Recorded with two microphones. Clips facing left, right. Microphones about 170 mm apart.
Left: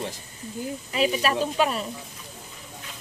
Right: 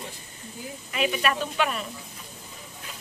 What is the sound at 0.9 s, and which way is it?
Speech, 30° left (ahead or behind).